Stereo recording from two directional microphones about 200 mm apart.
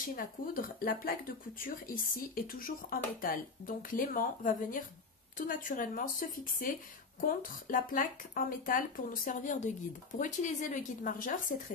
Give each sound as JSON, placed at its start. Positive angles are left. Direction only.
{"t": 0.0, "sound": "speech", "side_deg": 45}